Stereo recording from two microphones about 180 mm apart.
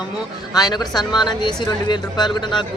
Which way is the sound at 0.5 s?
20° left (ahead or behind).